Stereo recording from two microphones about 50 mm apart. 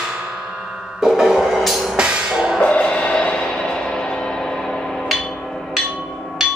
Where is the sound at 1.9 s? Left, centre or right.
Centre.